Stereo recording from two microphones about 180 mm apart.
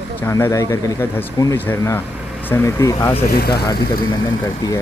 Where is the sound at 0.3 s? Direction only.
15° left (ahead or behind).